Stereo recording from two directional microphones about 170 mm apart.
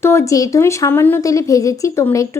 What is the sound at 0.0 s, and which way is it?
A woman's voice, 15° left (ahead or behind).